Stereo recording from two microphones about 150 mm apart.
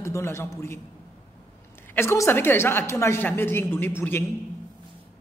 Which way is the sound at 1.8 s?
15° left (ahead or behind).